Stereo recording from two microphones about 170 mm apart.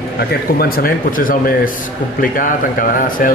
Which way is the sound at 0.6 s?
60° left (ahead or behind).